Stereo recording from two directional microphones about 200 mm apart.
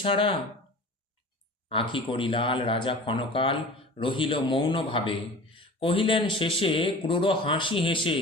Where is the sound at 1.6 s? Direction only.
25° left (ahead or behind).